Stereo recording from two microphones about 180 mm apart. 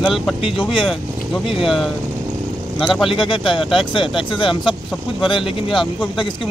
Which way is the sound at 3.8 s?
30° left (ahead or behind).